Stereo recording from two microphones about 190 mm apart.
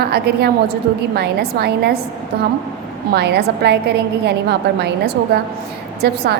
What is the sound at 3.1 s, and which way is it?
A woman's voice, 60° right (ahead or behind).